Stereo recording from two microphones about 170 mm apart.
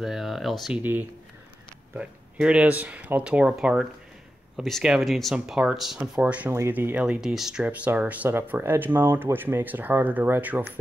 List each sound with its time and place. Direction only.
0.0 s speech: centre (ahead or behind)
2.0 s speech: 5° right (ahead or behind)